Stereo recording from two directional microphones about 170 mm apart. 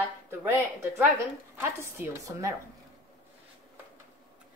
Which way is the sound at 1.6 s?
15° right (ahead or behind).